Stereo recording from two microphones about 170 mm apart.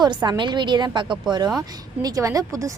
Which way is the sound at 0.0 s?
25° right (ahead or behind).